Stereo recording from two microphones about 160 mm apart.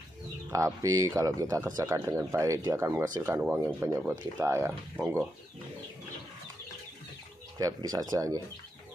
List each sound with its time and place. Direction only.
0.5 s speech: 20° right (ahead or behind)
7.5 s speech: 25° right (ahead or behind)